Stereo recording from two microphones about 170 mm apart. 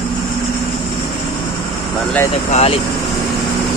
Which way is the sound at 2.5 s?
35° left (ahead or behind).